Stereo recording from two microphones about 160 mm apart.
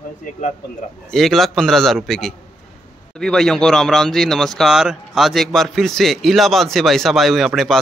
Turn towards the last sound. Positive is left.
turn(degrees=0)  # may be behind; listen again after turning